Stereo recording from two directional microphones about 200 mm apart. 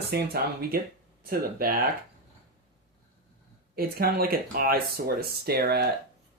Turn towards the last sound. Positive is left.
turn(degrees=-50)  # may be behind; listen again after turning